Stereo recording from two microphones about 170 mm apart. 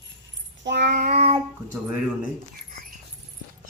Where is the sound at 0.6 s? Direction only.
85° right; by 1.1 s 70° right (ahead or behind).